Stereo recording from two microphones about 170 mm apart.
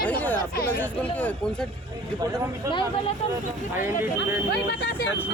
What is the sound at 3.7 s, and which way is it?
Speech, 15° right (ahead or behind).